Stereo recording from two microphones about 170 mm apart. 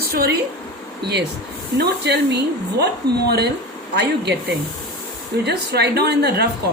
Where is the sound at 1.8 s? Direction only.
75° right (ahead or behind).